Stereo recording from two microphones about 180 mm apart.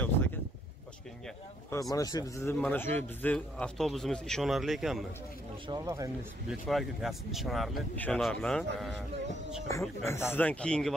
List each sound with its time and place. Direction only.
1.7 s a man's voice: 20° left (ahead or behind); by 5.0 s centre (ahead or behind)
5.7 s speech: 20° right (ahead or behind)
6.7 s speech: centre (ahead or behind)
9.7 s speech: 15° left (ahead or behind)